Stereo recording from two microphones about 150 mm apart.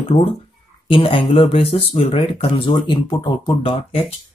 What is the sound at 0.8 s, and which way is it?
Speech, 35° left (ahead or behind).